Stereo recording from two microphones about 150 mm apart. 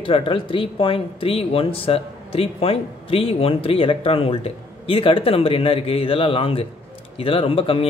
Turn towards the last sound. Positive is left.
turn(degrees=40)  # may be behind; listen again after turning